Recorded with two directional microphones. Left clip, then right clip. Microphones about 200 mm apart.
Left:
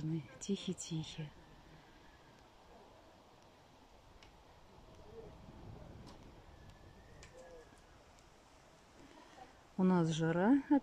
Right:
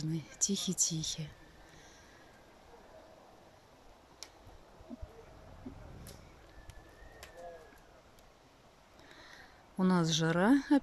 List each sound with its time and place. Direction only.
0.4 s speech: 5° right (ahead or behind)
9.8 s speech: 5° left (ahead or behind)